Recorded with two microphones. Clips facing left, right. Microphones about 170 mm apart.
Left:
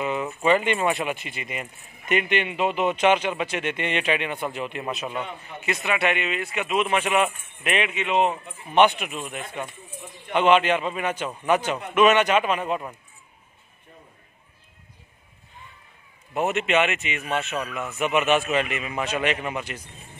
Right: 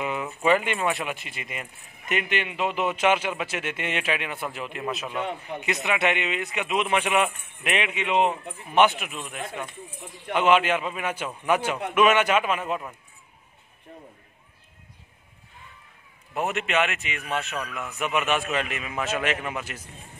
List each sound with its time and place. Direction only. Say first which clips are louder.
0.0 s speech: left 2 dB; 5° right (ahead or behind)
5.9 s a man's voice: left 1 dB; 20° right (ahead or behind); by 12.8 s 5° right (ahead or behind)
16.3 s speech: left 3 dB; centre (ahead or behind)